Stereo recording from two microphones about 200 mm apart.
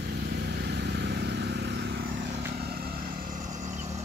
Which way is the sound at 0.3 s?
55° right (ahead or behind).